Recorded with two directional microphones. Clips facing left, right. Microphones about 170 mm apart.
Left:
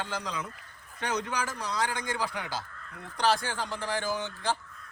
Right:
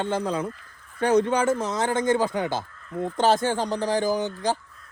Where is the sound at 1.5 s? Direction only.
45° right (ahead or behind).